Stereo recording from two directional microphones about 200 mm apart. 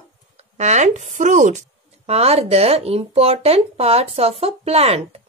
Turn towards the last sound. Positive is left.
turn(degrees=-30)  # may be behind; listen again after turning